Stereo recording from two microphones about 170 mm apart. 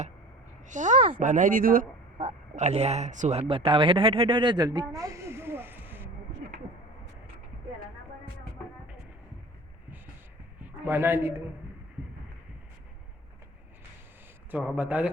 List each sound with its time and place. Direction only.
0.7 s speech: 45° right (ahead or behind)
2.1 s speech: 35° right (ahead or behind); by 6.1 s 10° right (ahead or behind)
10.8 s speech: 15° right (ahead or behind)
14.5 s speech: 10° right (ahead or behind)